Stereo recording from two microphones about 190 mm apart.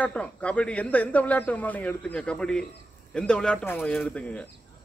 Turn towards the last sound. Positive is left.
turn(degrees=5)  # may be behind; listen again after turning